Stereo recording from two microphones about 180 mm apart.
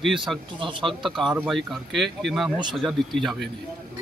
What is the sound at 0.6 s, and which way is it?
Speech, 25° right (ahead or behind).